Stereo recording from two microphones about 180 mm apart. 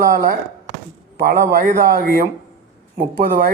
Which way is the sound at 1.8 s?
55° right (ahead or behind).